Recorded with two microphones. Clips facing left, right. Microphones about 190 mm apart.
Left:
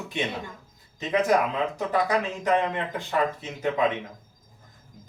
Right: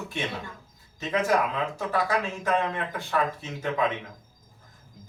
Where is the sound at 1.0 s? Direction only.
20° left (ahead or behind).